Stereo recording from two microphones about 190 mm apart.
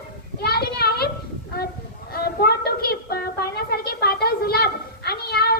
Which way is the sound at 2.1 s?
55° left (ahead or behind).